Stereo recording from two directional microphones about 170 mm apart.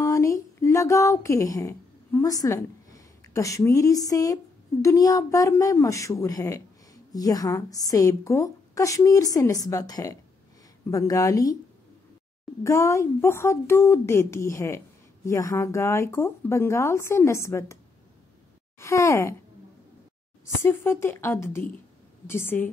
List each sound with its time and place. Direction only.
0.0 s music: 20° left (ahead or behind)
4.8 s a woman's voice: 20° left (ahead or behind)
12.6 s speech: 15° left (ahead or behind)
18.8 s speech: 15° left (ahead or behind)
20.6 s speech: 15° left (ahead or behind)